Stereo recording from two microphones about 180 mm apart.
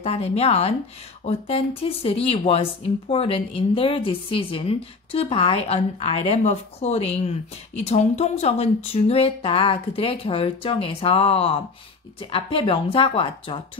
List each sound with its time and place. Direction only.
0.0 s speech: 35° left (ahead or behind)